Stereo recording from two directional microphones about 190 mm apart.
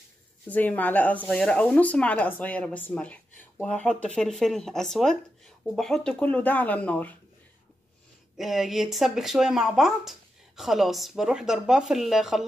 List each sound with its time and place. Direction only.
0.5 s speech: 10° left (ahead or behind)
8.4 s speech: centre (ahead or behind)